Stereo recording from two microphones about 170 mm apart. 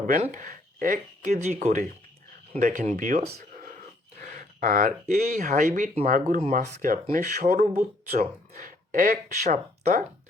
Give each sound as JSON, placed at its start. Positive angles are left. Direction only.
{"t": 0.1, "sound": "speech", "side_deg": -50}